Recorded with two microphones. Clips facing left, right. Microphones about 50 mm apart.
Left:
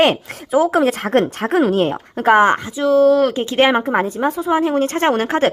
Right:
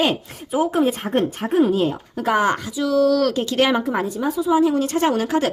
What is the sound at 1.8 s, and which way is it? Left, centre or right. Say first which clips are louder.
Speech: left 3 dB; left.